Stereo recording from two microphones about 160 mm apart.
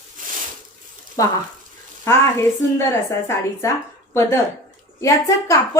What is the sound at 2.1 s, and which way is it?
A woman's voice, 15° left (ahead or behind).